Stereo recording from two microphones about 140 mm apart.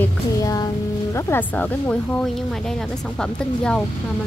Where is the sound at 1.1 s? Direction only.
15° left (ahead or behind).